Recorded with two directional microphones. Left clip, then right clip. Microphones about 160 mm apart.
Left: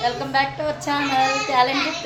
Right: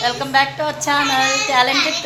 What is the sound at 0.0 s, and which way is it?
A child's voice, 10° right (ahead or behind).